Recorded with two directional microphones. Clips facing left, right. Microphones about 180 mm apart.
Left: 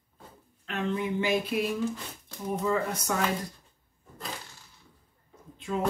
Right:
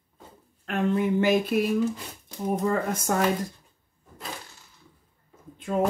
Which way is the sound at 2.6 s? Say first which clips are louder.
Left 1 dB; 50° right (ahead or behind).